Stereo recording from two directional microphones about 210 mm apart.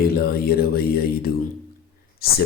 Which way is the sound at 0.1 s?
45° left (ahead or behind).